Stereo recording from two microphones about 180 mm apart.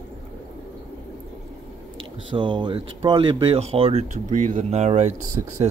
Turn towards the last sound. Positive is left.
turn(degrees=-25)  # may be behind; listen again after turning